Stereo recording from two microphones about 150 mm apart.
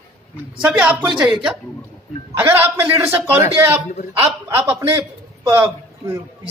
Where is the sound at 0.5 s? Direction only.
5° right (ahead or behind).